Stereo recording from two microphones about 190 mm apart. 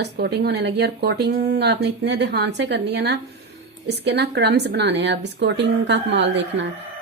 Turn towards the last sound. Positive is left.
turn(degrees=-70)  # may be behind; listen again after turning